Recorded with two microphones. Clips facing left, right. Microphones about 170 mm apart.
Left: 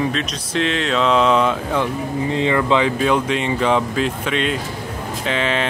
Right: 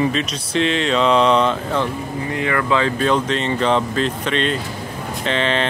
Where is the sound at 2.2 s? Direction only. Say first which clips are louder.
Left 2 dB; 20° left (ahead or behind).